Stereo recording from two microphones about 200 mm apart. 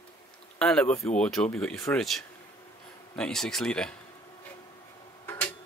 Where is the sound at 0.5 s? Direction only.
5° left (ahead or behind).